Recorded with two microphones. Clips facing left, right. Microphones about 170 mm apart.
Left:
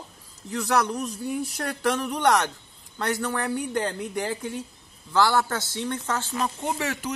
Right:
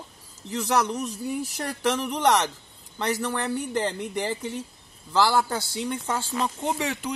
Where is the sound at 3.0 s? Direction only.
5° right (ahead or behind).